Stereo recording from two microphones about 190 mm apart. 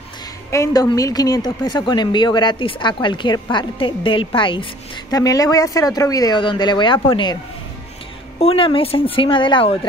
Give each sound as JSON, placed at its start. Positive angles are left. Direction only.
{"t": 0.5, "sound": "speech", "side_deg": 15}
{"t": 8.4, "sound": "speech", "side_deg": 30}